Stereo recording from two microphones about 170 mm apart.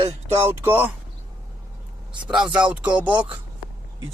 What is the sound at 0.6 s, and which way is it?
Speech, 10° right (ahead or behind).